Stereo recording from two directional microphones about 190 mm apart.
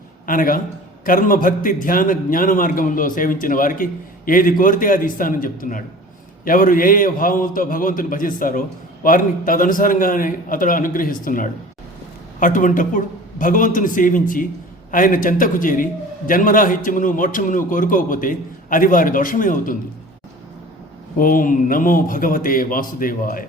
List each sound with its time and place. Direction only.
0.3 s a man's voice: 45° left (ahead or behind)
21.2 s a man's voice: 45° left (ahead or behind)